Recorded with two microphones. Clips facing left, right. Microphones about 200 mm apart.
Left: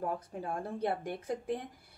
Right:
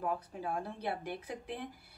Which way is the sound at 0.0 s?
45° left (ahead or behind).